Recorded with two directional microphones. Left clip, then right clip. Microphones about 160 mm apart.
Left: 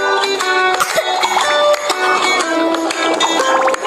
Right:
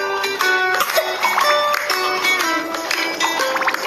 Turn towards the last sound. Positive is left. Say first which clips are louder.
# left 5 dB
turn(degrees=0)  # may be behind; listen again after turning